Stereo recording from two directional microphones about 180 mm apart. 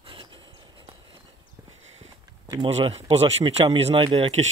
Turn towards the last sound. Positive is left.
turn(degrees=-35)  # may be behind; listen again after turning